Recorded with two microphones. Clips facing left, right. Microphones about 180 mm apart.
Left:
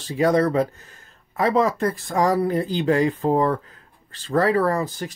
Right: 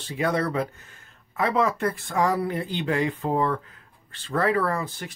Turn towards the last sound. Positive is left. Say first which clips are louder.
# left 5 dB
turn(degrees=40)  # may be behind; listen again after turning